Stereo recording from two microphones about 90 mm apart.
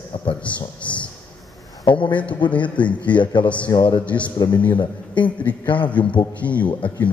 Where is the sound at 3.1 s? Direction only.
60° left (ahead or behind).